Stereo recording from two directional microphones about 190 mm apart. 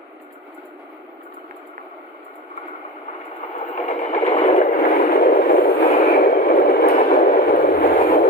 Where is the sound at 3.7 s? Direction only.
40° left (ahead or behind).